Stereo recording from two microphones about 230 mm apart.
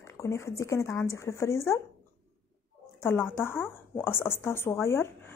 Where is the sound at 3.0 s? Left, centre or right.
Centre.